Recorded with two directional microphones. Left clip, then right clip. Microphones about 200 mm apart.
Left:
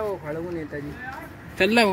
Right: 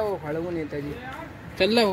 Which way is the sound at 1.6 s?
Centre (ahead or behind).